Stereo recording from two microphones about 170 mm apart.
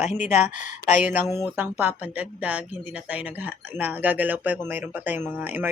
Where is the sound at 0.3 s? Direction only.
40° left (ahead or behind).